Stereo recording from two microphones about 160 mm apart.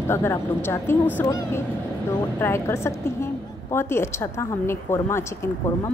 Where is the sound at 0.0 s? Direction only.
15° left (ahead or behind).